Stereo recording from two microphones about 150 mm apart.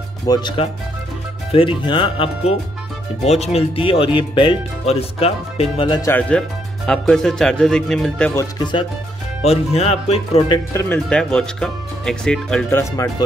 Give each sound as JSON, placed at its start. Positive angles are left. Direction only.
{"t": 0.3, "sound": "speech", "side_deg": 30}
{"t": 5.9, "sound": "speech", "side_deg": 20}
{"t": 6.9, "sound": "speech", "side_deg": 5}
{"t": 8.4, "sound": "speech", "side_deg": 25}
{"t": 9.4, "sound": "speech", "side_deg": 45}
{"t": 10.7, "sound": "speech", "side_deg": 20}
{"t": 11.1, "sound": "speech", "side_deg": 5}